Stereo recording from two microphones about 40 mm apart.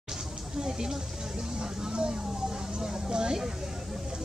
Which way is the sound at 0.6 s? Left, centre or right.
Centre.